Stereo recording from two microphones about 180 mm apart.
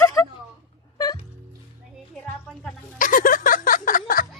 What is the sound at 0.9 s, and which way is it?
Music, 20° left (ahead or behind).